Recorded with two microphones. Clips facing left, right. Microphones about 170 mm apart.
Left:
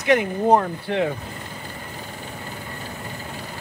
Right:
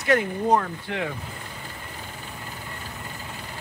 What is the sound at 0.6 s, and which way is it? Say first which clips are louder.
Speech: left 6 dB; 30° left (ahead or behind).